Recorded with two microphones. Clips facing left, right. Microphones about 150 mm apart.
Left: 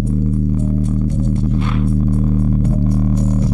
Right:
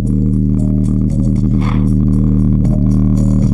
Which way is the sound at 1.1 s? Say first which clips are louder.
Right 4 dB; 35° right (ahead or behind).